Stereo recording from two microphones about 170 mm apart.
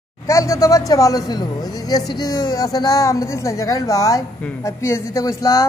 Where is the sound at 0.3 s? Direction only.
20° left (ahead or behind).